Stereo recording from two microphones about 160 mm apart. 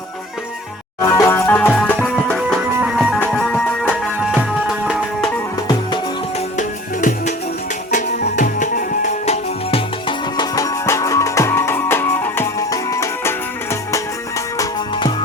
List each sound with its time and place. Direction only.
1.0 s music: 20° left (ahead or behind); by 2.6 s centre (ahead or behind)
2.6 s music: 10° right (ahead or behind)
6.6 s music: 50° left (ahead or behind)
8.4 s music: 55° left (ahead or behind)
10.1 s music: 25° left (ahead or behind)
14.6 s music: 30° left (ahead or behind)